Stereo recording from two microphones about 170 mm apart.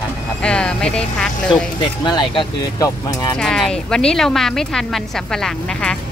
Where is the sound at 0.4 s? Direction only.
5° left (ahead or behind).